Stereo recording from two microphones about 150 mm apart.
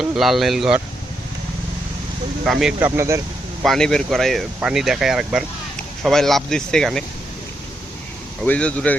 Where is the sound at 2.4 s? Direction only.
5° right (ahead or behind).